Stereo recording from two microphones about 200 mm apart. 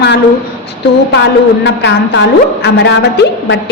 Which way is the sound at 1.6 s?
60° left (ahead or behind).